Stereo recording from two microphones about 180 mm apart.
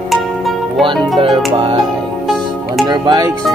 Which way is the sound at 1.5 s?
30° right (ahead or behind).